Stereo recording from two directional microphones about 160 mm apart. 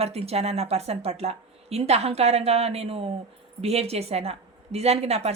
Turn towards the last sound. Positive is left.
turn(degrees=-40)  # may be behind; listen again after turning